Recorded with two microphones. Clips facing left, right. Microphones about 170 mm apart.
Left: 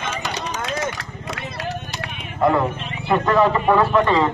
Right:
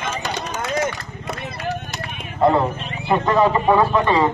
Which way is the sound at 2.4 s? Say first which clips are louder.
Right 1 dB; 25° right (ahead or behind).